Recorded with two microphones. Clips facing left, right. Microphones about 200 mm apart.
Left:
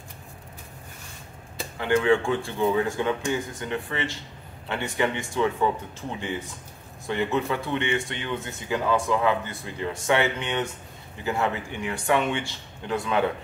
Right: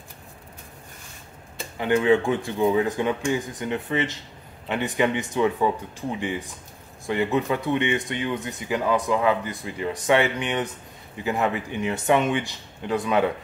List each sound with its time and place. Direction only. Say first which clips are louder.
1.8 s speech: right 2 dB; 20° right (ahead or behind)